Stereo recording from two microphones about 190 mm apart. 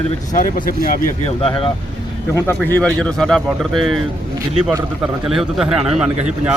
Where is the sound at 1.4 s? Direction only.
30° left (ahead or behind).